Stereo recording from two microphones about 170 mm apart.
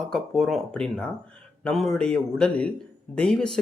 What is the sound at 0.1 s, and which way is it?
Speech, centre (ahead or behind).